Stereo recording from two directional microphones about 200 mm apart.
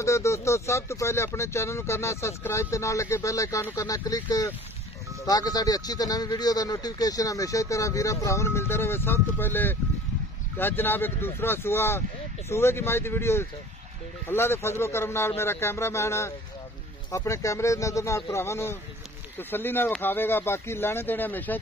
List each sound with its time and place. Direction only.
0.0 s speech: 15° left (ahead or behind)